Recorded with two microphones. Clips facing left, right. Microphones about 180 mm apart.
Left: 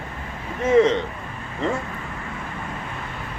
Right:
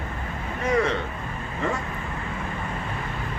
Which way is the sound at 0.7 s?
20° left (ahead or behind).